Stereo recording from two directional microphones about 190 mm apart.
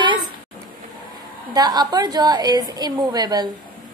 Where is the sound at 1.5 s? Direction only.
20° right (ahead or behind).